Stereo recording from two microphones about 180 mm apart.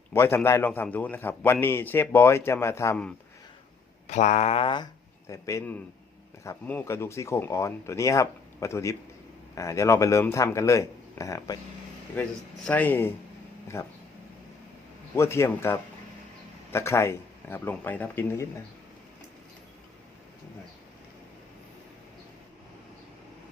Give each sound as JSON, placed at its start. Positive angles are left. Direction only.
{"t": 0.1, "sound": "a man's voice", "side_deg": 15}
{"t": 4.0, "sound": "speech", "side_deg": 40}
{"t": 5.3, "sound": "a man's voice", "side_deg": 15}
{"t": 12.6, "sound": "a man's voice", "side_deg": 10}
{"t": 15.1, "sound": "a man's voice", "side_deg": 15}